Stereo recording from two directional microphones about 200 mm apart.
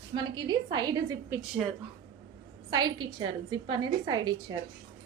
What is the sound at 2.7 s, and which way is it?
A woman's voice, 20° right (ahead or behind).